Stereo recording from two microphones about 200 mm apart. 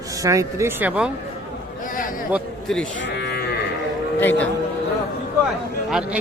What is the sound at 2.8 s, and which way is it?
Moo, 55° left (ahead or behind).